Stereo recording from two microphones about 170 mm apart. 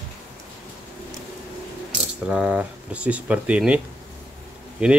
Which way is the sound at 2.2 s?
5° right (ahead or behind).